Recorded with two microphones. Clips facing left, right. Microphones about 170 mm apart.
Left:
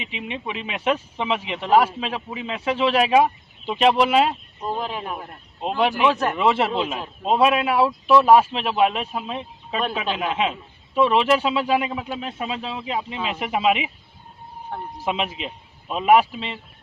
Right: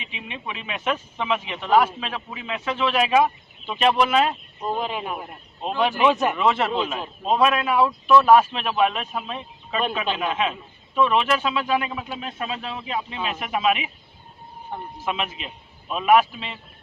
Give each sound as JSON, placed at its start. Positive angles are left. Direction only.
{"t": 0.0, "sound": "speech", "side_deg": 25}
{"t": 4.6, "sound": "speech", "side_deg": 0}
{"t": 5.6, "sound": "a man's voice", "side_deg": 10}
{"t": 6.1, "sound": "speech", "side_deg": -5}
{"t": 6.3, "sound": "speech", "side_deg": 25}
{"t": 7.4, "sound": "a man's voice", "side_deg": 15}
{"t": 7.7, "sound": "a man's voice", "side_deg": 25}
{"t": 11.8, "sound": "a man's voice", "side_deg": 15}
{"t": 14.9, "sound": "speech", "side_deg": 25}